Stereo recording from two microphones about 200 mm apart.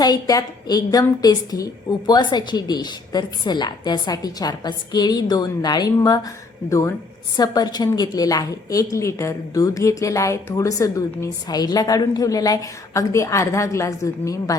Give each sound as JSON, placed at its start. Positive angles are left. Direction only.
{"t": 0.0, "sound": "a woman's voice", "side_deg": 20}